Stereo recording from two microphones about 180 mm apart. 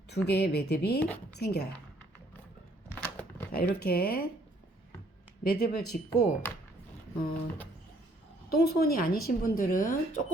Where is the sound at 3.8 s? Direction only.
60° left (ahead or behind).